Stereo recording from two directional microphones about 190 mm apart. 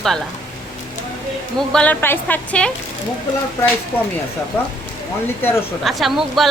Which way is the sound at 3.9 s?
10° left (ahead or behind).